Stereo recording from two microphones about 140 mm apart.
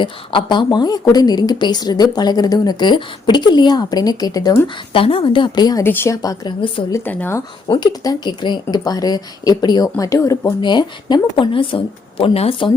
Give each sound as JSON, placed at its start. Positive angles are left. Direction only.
{"t": 0.0, "sound": "a woman's voice", "side_deg": 35}
{"t": 4.9, "sound": "speech", "side_deg": 40}
{"t": 5.8, "sound": "a woman's voice", "side_deg": 15}
{"t": 6.9, "sound": "speech", "side_deg": 15}
{"t": 7.7, "sound": "a woman's voice", "side_deg": 30}
{"t": 10.6, "sound": "speech", "side_deg": 30}